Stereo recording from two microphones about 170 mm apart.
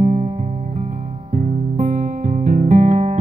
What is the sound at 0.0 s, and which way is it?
Music, 30° right (ahead or behind).